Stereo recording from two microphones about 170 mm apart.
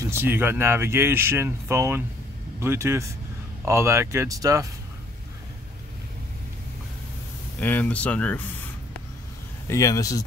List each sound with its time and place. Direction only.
0.0 s speech: 15° right (ahead or behind)
7.6 s speech: 10° left (ahead or behind)
9.7 s speech: 20° left (ahead or behind)